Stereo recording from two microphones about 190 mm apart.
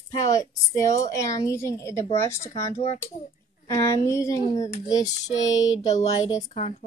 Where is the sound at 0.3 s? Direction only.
15° left (ahead or behind).